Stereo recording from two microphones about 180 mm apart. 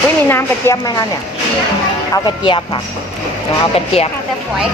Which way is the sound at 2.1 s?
25° left (ahead or behind).